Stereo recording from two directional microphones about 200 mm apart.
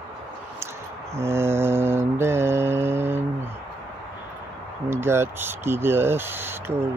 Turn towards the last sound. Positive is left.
turn(degrees=-10)  # may be behind; listen again after turning